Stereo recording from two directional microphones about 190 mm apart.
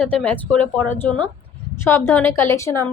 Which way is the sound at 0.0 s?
5° left (ahead or behind).